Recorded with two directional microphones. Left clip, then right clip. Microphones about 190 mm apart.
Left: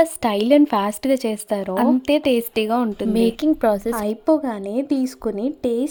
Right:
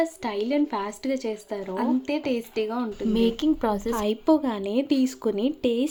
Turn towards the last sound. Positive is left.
turn(degrees=15)  # may be behind; listen again after turning